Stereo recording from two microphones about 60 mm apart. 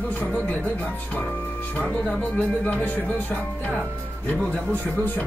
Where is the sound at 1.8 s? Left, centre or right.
Centre.